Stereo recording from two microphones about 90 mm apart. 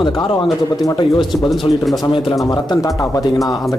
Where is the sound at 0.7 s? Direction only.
45° left (ahead or behind).